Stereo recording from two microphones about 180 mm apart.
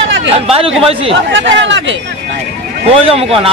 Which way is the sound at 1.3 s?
85° right.